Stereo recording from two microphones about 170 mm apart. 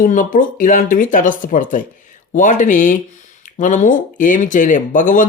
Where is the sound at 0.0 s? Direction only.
50° left (ahead or behind).